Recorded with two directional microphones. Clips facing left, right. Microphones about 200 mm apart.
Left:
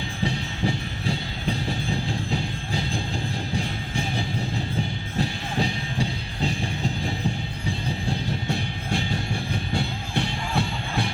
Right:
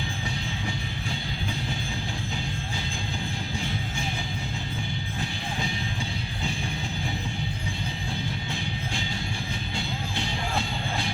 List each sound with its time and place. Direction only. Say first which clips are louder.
9.7 s music: left 6 dB; 60° left (ahead or behind)